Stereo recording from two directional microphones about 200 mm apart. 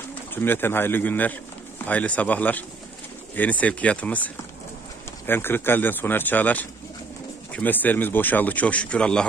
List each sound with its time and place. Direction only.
0.3 s a man's voice: 10° left (ahead or behind)